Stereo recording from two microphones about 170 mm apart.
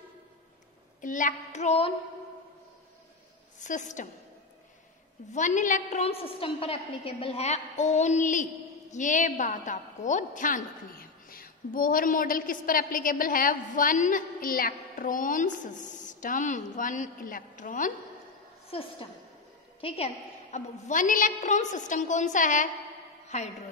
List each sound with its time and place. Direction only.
1.0 s a woman's voice: 50° left (ahead or behind)
3.6 s a woman's voice: 45° left (ahead or behind)
5.3 s a woman's voice: 45° left (ahead or behind)
18.7 s a woman's voice: 35° left (ahead or behind)
20.5 s a woman's voice: 45° left (ahead or behind)
23.2 s a sound: 40° left (ahead or behind)